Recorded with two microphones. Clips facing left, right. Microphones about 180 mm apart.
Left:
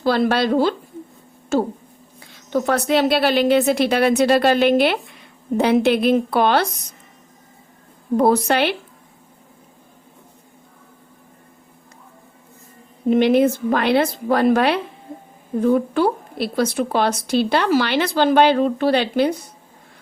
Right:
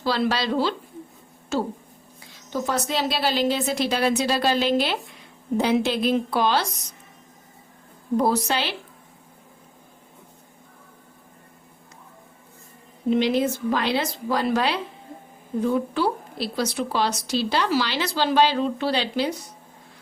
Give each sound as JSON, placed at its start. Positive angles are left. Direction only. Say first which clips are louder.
{"t": 0.0, "sound": "speech", "louder": "left 6 dB", "side_deg": 55}
{"t": 2.5, "sound": "a woman's voice", "louder": "left 7 dB", "side_deg": 60}
{"t": 8.1, "sound": "a woman's voice", "louder": "left 6 dB", "side_deg": 55}
{"t": 13.1, "sound": "a woman's voice", "louder": "left 6 dB", "side_deg": 55}